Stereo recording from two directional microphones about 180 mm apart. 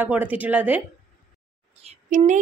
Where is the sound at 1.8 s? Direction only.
45° right (ahead or behind).